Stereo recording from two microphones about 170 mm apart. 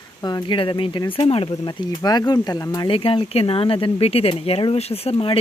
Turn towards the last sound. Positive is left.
turn(degrees=35)  # may be behind; listen again after turning